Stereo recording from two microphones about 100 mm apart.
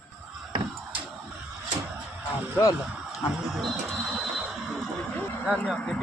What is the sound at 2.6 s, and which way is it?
Speech, 35° left (ahead or behind).